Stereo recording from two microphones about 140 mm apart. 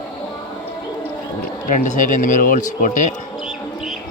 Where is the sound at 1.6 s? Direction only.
60° left (ahead or behind).